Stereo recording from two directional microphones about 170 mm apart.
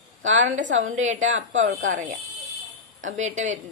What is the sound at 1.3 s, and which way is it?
Speech, 90° right.